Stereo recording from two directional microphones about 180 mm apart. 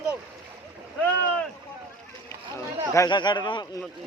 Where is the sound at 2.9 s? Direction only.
20° left (ahead or behind).